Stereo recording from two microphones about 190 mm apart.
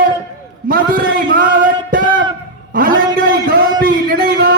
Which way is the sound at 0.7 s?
50° right (ahead or behind).